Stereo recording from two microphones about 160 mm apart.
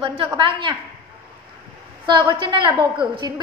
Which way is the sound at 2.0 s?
30° right (ahead or behind).